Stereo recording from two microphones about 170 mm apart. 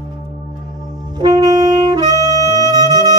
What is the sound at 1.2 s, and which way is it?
Saxophone, 25° right (ahead or behind).